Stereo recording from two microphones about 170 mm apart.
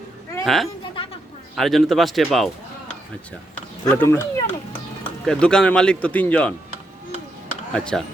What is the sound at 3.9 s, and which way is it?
Speech, 10° left (ahead or behind).